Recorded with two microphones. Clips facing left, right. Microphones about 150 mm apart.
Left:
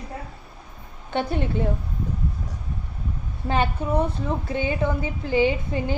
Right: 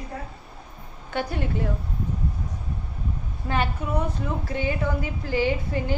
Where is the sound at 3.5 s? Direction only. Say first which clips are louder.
Left 3 dB; 25° left (ahead or behind).